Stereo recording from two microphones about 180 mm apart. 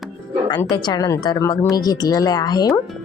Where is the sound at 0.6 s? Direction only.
25° left (ahead or behind).